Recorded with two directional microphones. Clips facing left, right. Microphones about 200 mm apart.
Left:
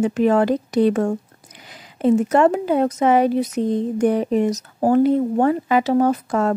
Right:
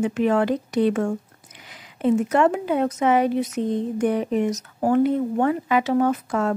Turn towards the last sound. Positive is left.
turn(degrees=40)  # may be behind; listen again after turning